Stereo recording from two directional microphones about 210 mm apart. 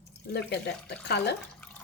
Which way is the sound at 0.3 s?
50° left (ahead or behind).